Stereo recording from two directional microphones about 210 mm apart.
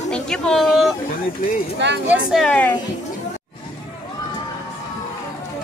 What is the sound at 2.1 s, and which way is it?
Speech, centre (ahead or behind).